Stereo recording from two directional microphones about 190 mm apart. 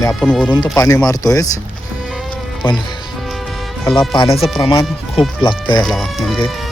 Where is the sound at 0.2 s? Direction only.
5° left (ahead or behind).